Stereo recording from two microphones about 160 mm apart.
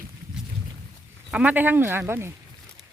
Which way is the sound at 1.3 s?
10° right (ahead or behind).